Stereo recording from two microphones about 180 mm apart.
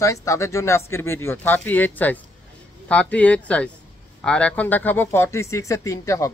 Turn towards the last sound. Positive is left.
turn(degrees=20)  # may be behind; listen again after turning